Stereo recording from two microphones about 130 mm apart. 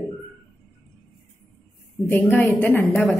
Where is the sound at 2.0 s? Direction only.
15° left (ahead or behind).